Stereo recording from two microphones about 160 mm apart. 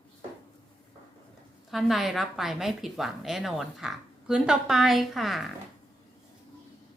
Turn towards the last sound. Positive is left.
turn(degrees=0)  # may be behind; listen again after turning